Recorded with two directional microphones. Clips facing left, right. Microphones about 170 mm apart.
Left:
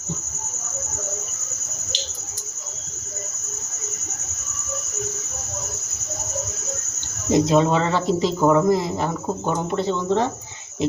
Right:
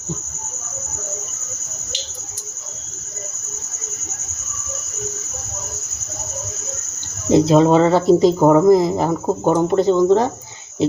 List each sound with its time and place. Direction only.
7.3 s speech: 35° right (ahead or behind)